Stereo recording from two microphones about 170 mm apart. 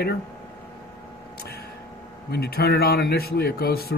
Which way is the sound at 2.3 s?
70° left (ahead or behind).